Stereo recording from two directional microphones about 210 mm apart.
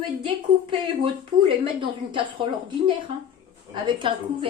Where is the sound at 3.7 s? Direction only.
20° right (ahead or behind).